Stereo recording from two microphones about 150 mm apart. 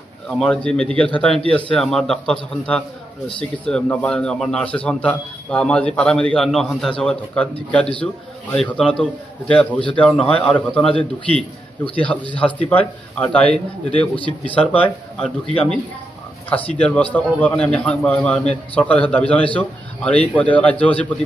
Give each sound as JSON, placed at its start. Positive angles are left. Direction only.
{"t": 0.3, "sound": "a man's voice", "side_deg": 5}
{"t": 11.3, "sound": "a man's voice", "side_deg": 40}
{"t": 12.0, "sound": "a man's voice", "side_deg": 10}
{"t": 16.4, "sound": "a man's voice", "side_deg": 10}